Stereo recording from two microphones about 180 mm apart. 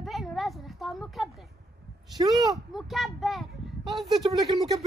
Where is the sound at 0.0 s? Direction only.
Centre (ahead or behind).